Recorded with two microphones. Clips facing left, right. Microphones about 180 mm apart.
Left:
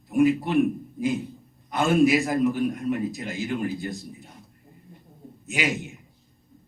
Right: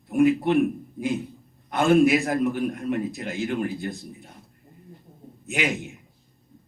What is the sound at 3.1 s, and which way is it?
Speech, 60° right (ahead or behind).